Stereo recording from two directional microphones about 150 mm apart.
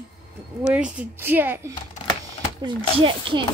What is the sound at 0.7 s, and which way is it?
Speech, 5° right (ahead or behind).